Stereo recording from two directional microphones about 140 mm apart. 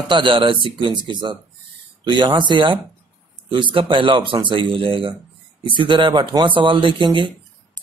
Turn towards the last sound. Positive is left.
turn(degrees=-35)  # may be behind; listen again after turning